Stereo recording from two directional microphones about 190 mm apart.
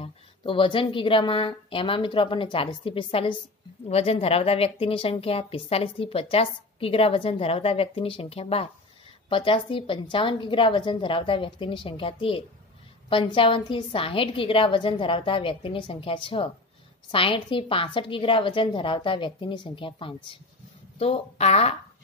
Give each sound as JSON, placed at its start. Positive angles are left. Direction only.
{"t": 0.0, "sound": "a woman's voice", "side_deg": 30}